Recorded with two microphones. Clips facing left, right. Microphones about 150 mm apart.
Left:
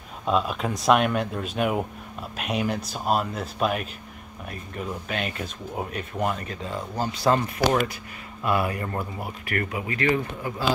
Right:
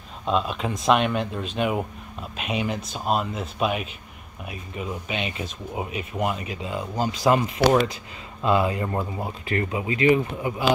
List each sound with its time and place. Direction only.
0.2 s speech: 5° left (ahead or behind); by 10.5 s 20° right (ahead or behind)